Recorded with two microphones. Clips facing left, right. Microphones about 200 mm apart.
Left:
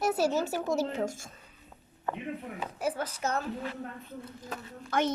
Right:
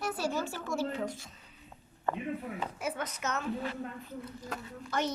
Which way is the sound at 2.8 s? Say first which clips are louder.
Left 6 dB; 30° left (ahead or behind).